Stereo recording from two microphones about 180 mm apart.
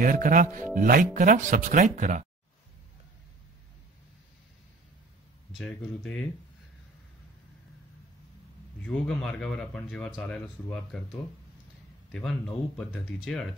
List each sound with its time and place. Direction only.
0.0 s speech: 50° right (ahead or behind)
5.5 s speech: centre (ahead or behind)
8.8 s speech: 5° left (ahead or behind)
12.1 s speech: 5° left (ahead or behind)